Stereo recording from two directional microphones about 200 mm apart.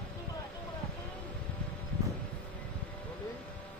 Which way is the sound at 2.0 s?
15° right (ahead or behind).